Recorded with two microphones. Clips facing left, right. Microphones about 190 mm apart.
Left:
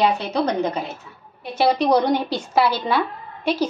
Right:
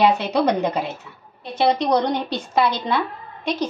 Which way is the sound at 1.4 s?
5° left (ahead or behind).